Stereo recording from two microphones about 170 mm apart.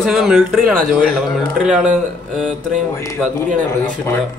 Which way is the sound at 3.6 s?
10° left (ahead or behind).